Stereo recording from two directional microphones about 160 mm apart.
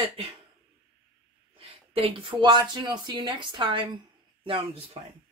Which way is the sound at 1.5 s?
35° right (ahead or behind).